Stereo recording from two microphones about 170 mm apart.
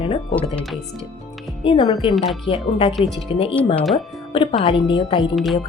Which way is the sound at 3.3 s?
30° left (ahead or behind).